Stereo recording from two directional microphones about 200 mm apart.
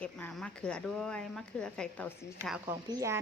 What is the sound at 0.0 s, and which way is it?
Speech, 5° left (ahead or behind).